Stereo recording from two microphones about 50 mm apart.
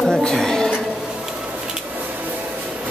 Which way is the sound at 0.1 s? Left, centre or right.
Centre.